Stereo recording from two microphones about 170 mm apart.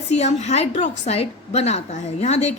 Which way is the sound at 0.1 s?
40° left (ahead or behind).